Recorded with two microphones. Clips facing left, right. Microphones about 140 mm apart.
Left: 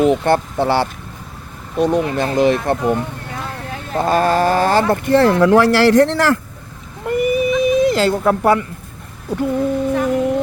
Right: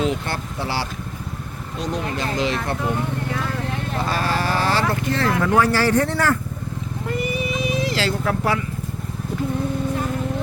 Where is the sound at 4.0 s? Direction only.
50° left (ahead or behind).